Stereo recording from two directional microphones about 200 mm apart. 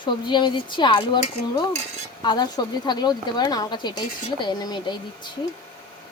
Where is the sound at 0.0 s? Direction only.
20° left (ahead or behind).